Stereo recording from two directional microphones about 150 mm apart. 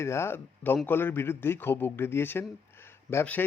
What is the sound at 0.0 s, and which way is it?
Speech, 15° left (ahead or behind).